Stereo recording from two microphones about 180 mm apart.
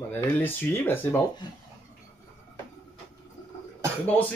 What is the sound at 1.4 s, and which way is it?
Speech, 25° left (ahead or behind).